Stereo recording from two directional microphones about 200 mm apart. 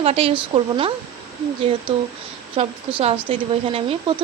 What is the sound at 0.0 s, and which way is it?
Speech, 30° right (ahead or behind).